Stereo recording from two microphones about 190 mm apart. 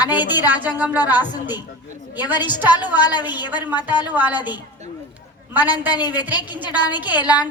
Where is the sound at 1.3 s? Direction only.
20° left (ahead or behind).